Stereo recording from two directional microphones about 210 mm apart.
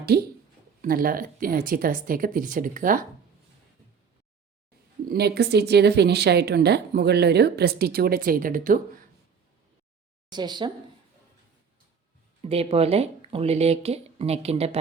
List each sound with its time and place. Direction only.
0.0 s speech: 45° right (ahead or behind)
5.0 s speech: 50° right (ahead or behind)
10.2 s speech: 20° right (ahead or behind)
12.4 s speech: 30° right (ahead or behind)